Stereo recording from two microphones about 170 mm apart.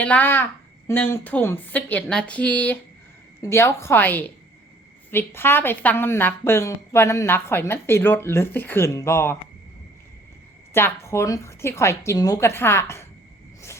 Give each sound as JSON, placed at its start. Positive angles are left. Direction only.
{"t": 0.0, "sound": "a woman's voice", "side_deg": 10}
{"t": 10.8, "sound": "a woman's voice", "side_deg": 15}